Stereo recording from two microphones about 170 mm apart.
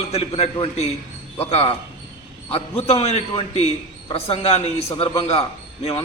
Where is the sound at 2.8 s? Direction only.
35° left (ahead or behind).